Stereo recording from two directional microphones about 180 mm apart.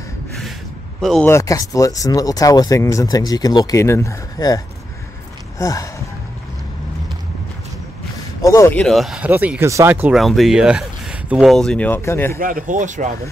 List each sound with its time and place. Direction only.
1.0 s speech: centre (ahead or behind)
1.3 s speech: 20° left (ahead or behind)
5.6 s speech: 20° left (ahead or behind)
8.4 s speech: 20° left (ahead or behind)
8.8 s speech: centre (ahead or behind)
10.1 s speech: centre (ahead or behind)
12.4 s speech: 50° right (ahead or behind)